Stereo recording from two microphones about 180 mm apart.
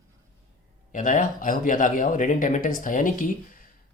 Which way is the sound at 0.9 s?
45° left (ahead or behind).